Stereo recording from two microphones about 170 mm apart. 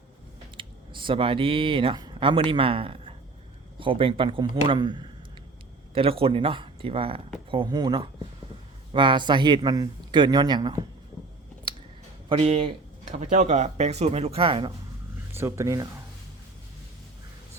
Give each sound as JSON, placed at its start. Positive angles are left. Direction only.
{"t": 0.5, "sound": "speech", "side_deg": -30}
{"t": 12.3, "sound": "speech", "side_deg": -35}
{"t": 15.3, "sound": "speech", "side_deg": -15}